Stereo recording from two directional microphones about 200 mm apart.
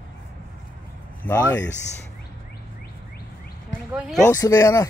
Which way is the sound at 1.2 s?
5° left (ahead or behind).